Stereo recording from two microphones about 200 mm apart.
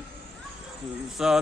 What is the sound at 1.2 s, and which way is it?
Speech, 5° right (ahead or behind).